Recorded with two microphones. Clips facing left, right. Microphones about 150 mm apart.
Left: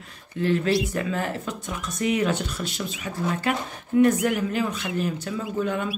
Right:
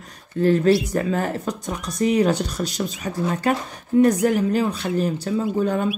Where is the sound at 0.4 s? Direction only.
40° right (ahead or behind).